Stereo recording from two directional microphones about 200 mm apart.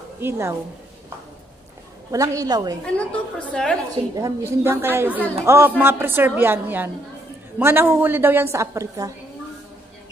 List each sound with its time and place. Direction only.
0.2 s a woman's voice: 15° right (ahead or behind)
2.0 s a woman's voice: 15° right (ahead or behind)
2.8 s a woman's voice: 5° left (ahead or behind)
4.1 s a woman's voice: 15° right (ahead or behind)